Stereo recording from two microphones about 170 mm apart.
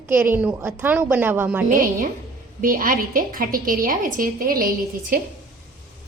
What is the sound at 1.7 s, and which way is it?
A woman's voice, 55° right (ahead or behind).